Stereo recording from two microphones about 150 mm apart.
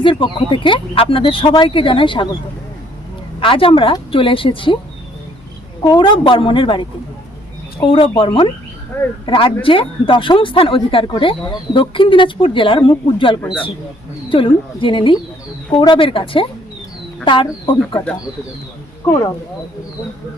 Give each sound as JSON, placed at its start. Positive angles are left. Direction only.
{"t": 0.0, "sound": "speech", "side_deg": 35}
{"t": 3.4, "sound": "speech", "side_deg": 35}
{"t": 5.8, "sound": "speech", "side_deg": 30}
{"t": 19.0, "sound": "speech", "side_deg": 25}